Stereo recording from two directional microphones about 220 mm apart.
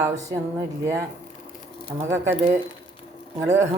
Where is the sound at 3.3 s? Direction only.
10° right (ahead or behind).